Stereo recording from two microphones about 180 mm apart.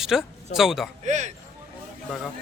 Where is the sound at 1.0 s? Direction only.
40° right (ahead or behind).